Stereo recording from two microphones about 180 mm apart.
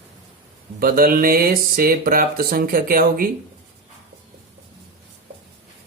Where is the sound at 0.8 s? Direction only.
55° right (ahead or behind).